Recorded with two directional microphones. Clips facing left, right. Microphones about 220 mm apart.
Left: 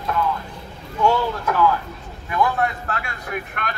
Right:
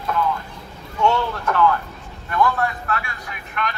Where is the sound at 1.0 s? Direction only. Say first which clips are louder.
Left 1 dB; 10° left (ahead or behind).